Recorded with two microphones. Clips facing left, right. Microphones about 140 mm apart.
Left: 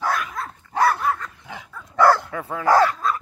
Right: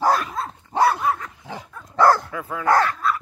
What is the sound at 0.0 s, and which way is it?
Dog, 30° right (ahead or behind).